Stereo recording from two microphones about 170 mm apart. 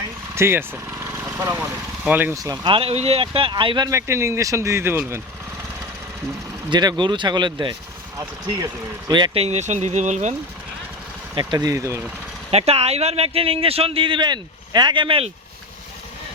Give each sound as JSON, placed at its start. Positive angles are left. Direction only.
{"t": 0.3, "sound": "speech", "side_deg": -15}
{"t": 1.0, "sound": "vehicle", "side_deg": -15}
{"t": 2.0, "sound": "speech", "side_deg": -10}
{"t": 2.7, "sound": "a man's voice", "side_deg": -35}
{"t": 3.8, "sound": "speech", "side_deg": -15}
{"t": 6.7, "sound": "a man's voice", "side_deg": -25}
{"t": 11.3, "sound": "speech", "side_deg": -20}
{"t": 12.5, "sound": "a man's voice", "side_deg": -35}